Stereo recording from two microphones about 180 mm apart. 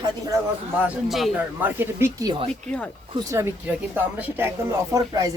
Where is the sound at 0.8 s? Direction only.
5° right (ahead or behind).